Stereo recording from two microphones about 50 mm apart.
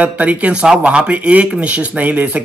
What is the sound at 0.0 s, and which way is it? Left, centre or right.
Speech, right.